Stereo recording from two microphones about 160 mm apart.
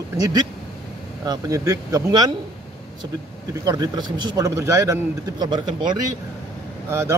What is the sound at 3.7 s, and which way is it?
Speech, 25° right (ahead or behind).